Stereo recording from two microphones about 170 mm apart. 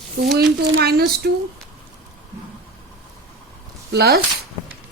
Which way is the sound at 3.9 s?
70° right (ahead or behind).